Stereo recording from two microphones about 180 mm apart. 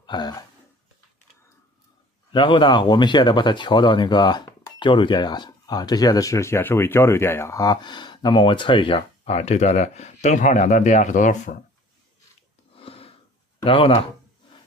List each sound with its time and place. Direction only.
0.0 s speech: 25° left (ahead or behind)
2.3 s speech: 25° left (ahead or behind); by 11.5 s 45° left (ahead or behind)
12.7 s a sound: 30° left (ahead or behind)
13.6 s speech: 30° left (ahead or behind)